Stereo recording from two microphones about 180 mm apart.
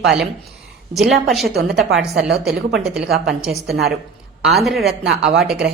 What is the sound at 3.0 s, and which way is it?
Speech, 60° right (ahead or behind).